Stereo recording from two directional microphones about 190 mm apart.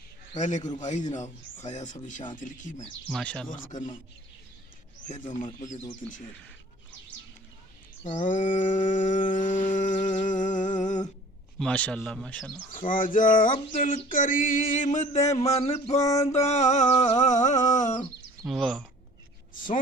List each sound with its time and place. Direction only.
0.3 s speech: 40° left (ahead or behind)
3.1 s speech: centre (ahead or behind)
8.3 s a sound: 45° left (ahead or behind)
11.6 s speech: 5° left (ahead or behind)
12.7 s a sound: 45° left (ahead or behind)
15.9 s speech: 35° left (ahead or behind)
18.4 s speech: centre (ahead or behind)